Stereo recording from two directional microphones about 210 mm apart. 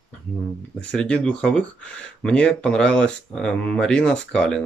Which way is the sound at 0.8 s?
5° left (ahead or behind).